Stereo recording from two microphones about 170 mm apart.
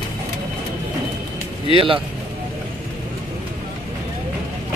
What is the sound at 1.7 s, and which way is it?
Speech, 30° right (ahead or behind).